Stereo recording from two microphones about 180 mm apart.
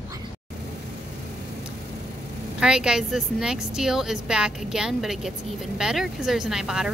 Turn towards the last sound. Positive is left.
turn(degrees=-5)  # may be behind; listen again after turning